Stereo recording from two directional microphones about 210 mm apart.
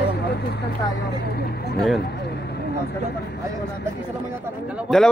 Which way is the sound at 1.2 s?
50° left (ahead or behind).